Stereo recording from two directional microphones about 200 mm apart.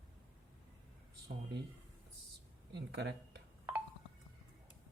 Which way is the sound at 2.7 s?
60° right (ahead or behind).